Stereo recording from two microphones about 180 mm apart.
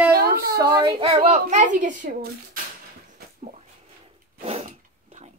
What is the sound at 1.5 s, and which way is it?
Speech, 45° right (ahead or behind).